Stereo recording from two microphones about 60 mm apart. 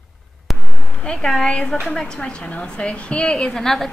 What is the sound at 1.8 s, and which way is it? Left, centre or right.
A woman's voice, centre.